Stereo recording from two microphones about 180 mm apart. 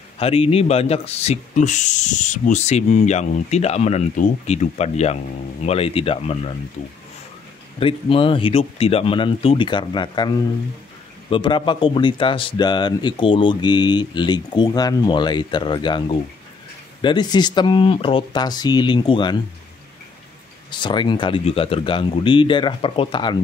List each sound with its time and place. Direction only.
0.2 s speech: 30° left (ahead or behind)
7.8 s speech: 30° left (ahead or behind)
20.7 s speech: 25° left (ahead or behind)